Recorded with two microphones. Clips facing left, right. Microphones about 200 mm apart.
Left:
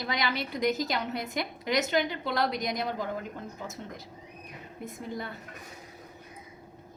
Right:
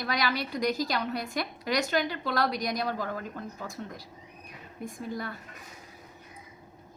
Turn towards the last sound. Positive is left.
turn(degrees=20)  # may be behind; listen again after turning